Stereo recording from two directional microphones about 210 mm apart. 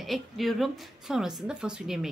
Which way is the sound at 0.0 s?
Centre (ahead or behind).